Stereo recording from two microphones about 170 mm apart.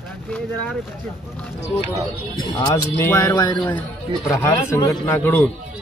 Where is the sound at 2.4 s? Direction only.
25° left (ahead or behind).